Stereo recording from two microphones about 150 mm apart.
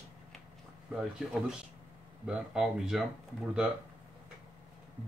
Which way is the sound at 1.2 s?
5° right (ahead or behind).